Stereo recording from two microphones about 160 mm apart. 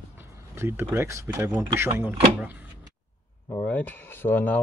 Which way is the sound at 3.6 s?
10° left (ahead or behind).